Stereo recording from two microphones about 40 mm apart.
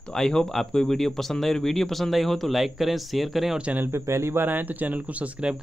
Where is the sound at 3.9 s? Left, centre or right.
Right.